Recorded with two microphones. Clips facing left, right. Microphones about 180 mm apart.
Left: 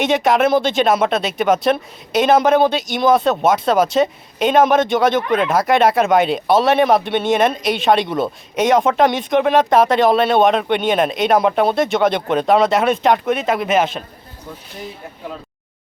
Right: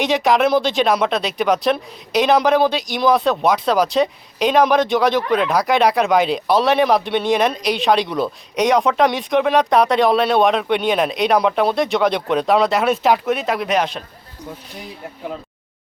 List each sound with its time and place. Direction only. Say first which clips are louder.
0.0 s speech: left 1 dB; centre (ahead or behind)